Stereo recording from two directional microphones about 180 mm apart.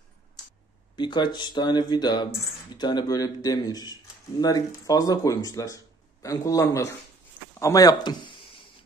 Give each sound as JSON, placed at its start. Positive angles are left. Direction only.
{"t": 0.9, "sound": "a man's voice", "side_deg": 25}